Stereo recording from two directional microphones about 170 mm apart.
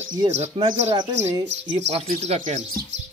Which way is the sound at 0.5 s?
30° right (ahead or behind).